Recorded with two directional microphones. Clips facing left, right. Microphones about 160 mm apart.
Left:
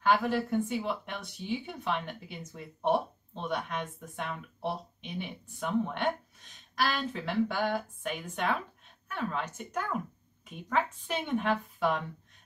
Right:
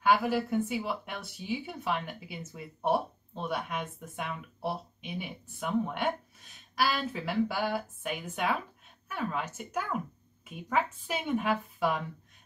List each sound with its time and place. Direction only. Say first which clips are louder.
0.0 s speech: right 1 dB; 10° right (ahead or behind)